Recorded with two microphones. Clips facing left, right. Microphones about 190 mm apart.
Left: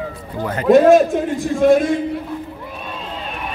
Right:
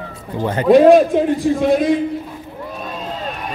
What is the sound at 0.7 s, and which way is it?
A man's voice, 45° left (ahead or behind).